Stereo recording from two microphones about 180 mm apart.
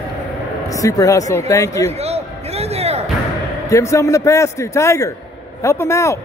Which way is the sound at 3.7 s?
15° left (ahead or behind).